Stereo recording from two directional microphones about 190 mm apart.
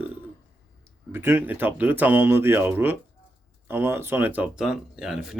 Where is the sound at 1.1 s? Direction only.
10° right (ahead or behind).